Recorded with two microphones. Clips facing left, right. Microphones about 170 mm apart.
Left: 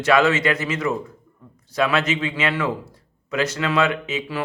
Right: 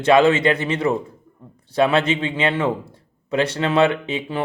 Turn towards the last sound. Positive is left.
turn(degrees=-25)  # may be behind; listen again after turning